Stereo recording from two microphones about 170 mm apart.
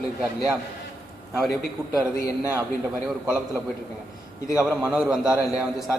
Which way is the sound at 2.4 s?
20° right (ahead or behind).